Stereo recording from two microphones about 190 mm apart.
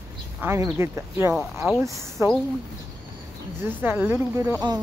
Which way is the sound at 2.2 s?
15° right (ahead or behind).